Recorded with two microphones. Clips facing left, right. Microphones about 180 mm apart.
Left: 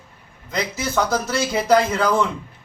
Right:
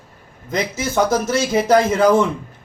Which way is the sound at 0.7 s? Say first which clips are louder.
Right 4 dB; 25° right (ahead or behind).